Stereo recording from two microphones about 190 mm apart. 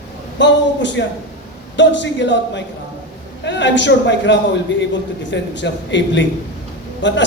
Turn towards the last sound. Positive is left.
turn(degrees=70)  # may be behind; listen again after turning